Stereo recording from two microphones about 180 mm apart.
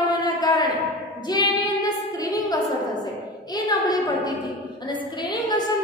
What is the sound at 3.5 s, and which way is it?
A woman's voice, 20° left (ahead or behind).